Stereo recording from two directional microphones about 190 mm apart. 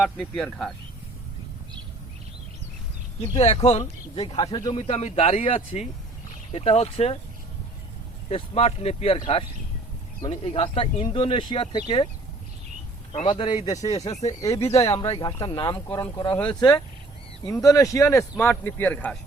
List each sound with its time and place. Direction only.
0.0 s speech: 5° left (ahead or behind)
3.3 s speech: 35° left (ahead or behind)
8.3 s speech: 30° left (ahead or behind)
13.1 s speech: 25° left (ahead or behind)
14.6 s speech: 30° left (ahead or behind); by 16.8 s 5° left (ahead or behind)
17.4 s speech: 15° left (ahead or behind)